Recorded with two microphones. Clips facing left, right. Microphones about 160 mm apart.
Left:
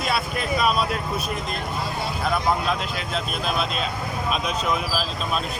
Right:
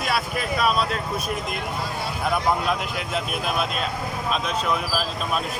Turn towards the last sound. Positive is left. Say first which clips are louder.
# even
turn(degrees=-10)  # may be behind; listen again after turning